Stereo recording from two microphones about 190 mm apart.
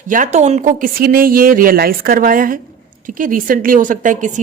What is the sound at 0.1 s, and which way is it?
A woman's voice, 40° right (ahead or behind).